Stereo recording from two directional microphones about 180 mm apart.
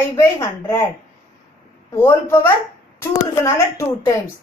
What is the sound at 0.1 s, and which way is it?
Speech, 15° left (ahead or behind).